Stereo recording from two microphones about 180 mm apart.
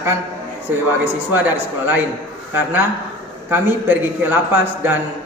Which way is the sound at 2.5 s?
10° right (ahead or behind).